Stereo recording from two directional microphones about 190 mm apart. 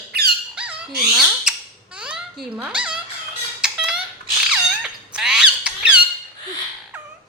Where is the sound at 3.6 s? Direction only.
5° right (ahead or behind).